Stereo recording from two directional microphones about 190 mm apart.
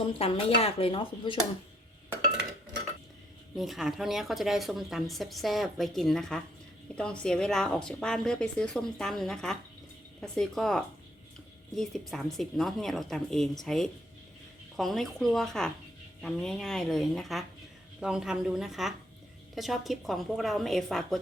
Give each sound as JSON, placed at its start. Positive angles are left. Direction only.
{"t": 0.1, "sound": "speech", "side_deg": 30}
{"t": 3.6, "sound": "a woman's voice", "side_deg": 0}